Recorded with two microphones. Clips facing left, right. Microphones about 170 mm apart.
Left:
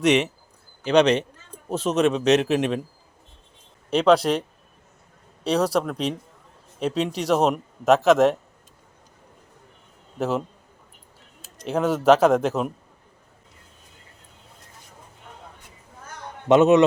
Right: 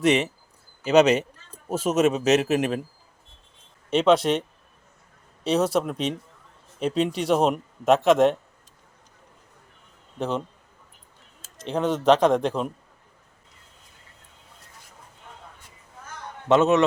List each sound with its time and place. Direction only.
0.0 s a man's voice: centre (ahead or behind)
3.8 s speech: centre (ahead or behind)
10.2 s speech: 5° left (ahead or behind)
11.6 s speech: 5° left (ahead or behind)
16.5 s a man's voice: 15° left (ahead or behind)